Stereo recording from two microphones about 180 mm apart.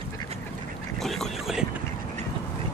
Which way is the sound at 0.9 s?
Centre (ahead or behind).